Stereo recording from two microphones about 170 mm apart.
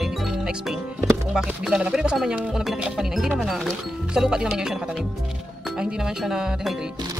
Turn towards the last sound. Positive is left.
turn(degrees=0)  # may be behind; listen again after turning